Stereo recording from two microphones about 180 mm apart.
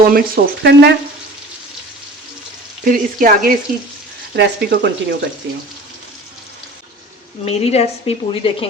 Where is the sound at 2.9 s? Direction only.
50° right (ahead or behind).